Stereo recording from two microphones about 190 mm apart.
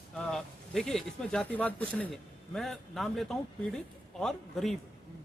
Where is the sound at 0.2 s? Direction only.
5° left (ahead or behind).